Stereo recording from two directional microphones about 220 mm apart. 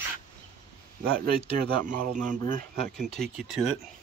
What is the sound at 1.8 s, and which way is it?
A man's voice, 35° right (ahead or behind).